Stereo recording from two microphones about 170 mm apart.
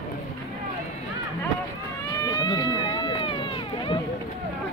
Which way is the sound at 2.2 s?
25° left (ahead or behind).